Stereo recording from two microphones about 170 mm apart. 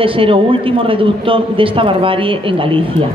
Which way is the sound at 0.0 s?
30° right (ahead or behind).